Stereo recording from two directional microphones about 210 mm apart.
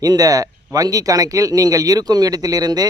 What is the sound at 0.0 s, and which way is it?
Speech, 15° right (ahead or behind).